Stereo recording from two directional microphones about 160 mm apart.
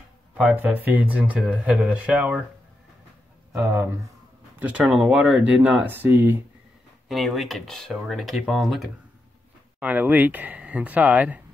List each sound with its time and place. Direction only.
0.3 s speech: 10° right (ahead or behind)
3.5 s speech: 15° right (ahead or behind)
7.1 s speech: centre (ahead or behind)